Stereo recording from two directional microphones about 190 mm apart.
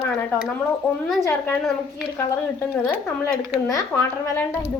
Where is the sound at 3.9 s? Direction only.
Centre (ahead or behind).